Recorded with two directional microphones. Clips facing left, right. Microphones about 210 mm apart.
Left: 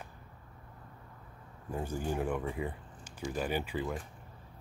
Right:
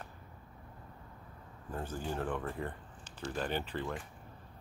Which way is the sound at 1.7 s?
10° left (ahead or behind).